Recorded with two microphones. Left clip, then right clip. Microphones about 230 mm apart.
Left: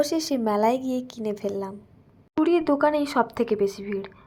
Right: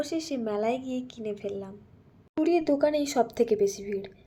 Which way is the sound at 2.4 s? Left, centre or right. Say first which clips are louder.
Left 3 dB; centre.